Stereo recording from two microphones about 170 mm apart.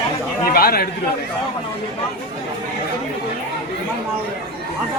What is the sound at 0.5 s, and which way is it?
Speech, 65° left (ahead or behind).